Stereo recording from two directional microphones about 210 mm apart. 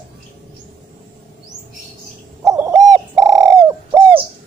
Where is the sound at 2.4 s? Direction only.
15° right (ahead or behind).